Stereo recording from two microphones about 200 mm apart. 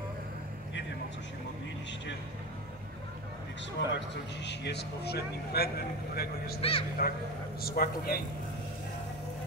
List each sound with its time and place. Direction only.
3.8 s speech: 65° left (ahead or behind)
6.6 s speech: 30° left (ahead or behind)
7.0 s speech: 50° left (ahead or behind)